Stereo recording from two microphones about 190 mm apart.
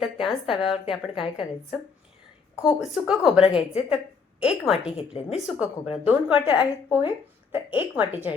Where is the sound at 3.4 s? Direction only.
30° left (ahead or behind).